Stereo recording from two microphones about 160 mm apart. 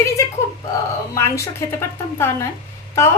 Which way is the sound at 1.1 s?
15° left (ahead or behind).